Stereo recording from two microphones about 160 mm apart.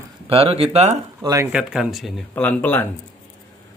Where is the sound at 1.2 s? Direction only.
25° right (ahead or behind).